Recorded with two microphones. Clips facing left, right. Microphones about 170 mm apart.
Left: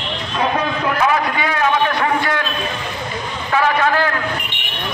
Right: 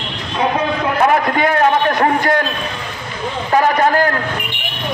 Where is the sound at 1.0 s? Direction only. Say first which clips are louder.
Right 5 dB; 50° right (ahead or behind).